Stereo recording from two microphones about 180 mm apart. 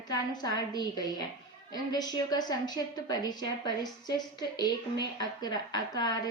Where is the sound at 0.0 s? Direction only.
20° left (ahead or behind).